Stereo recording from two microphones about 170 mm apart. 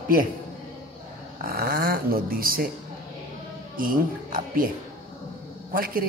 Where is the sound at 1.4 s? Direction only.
60° right (ahead or behind).